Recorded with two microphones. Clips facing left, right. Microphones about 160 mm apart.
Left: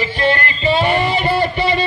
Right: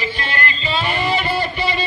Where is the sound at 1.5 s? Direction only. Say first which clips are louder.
Left 5 dB; 60° left (ahead or behind).